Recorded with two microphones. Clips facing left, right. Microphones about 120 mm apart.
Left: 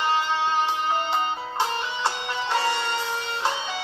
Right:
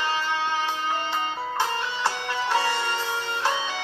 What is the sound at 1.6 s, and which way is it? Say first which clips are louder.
Music: left 1 dB; 20° left (ahead or behind).